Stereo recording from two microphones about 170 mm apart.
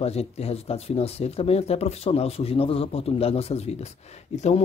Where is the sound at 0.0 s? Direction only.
35° left (ahead or behind).